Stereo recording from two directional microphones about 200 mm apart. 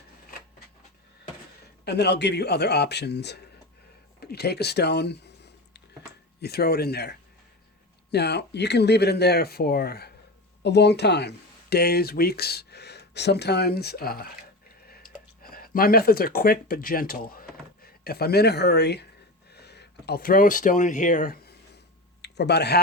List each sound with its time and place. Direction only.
1.8 s speech: 55° left (ahead or behind)
4.2 s a sound: 55° left (ahead or behind)
6.4 s speech: 50° left (ahead or behind)
15.4 s speech: 45° left (ahead or behind)
22.2 s speech: 55° left (ahead or behind)